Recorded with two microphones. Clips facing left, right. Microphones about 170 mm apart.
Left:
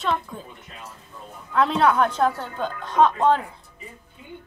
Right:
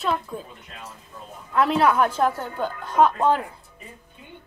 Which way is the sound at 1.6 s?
5° right (ahead or behind).